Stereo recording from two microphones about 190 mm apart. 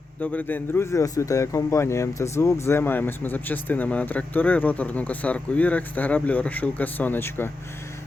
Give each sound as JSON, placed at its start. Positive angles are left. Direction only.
{"t": 0.2, "sound": "speech", "side_deg": 10}